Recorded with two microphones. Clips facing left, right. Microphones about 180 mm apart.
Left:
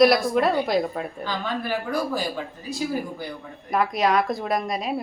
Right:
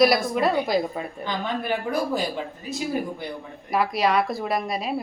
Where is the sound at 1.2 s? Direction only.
20° right (ahead or behind).